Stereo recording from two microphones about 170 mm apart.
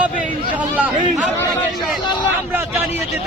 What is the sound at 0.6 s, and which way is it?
Speech, 10° right (ahead or behind).